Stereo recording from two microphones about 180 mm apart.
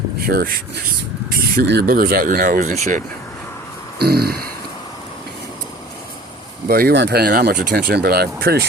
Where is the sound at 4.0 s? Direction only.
60° right (ahead or behind).